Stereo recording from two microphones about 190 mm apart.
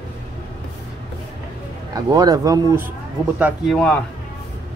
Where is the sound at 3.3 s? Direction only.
5° right (ahead or behind).